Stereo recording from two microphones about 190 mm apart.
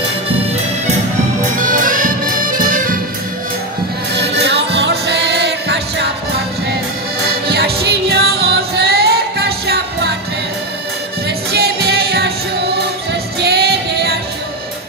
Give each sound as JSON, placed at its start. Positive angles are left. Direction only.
{"t": 1.6, "sound": "music", "side_deg": -45}
{"t": 4.1, "sound": "music", "side_deg": -65}
{"t": 7.4, "sound": "music", "side_deg": -55}
{"t": 11.2, "sound": "music", "side_deg": -55}